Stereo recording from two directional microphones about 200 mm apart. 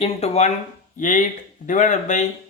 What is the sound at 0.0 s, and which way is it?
Speech, 35° left (ahead or behind).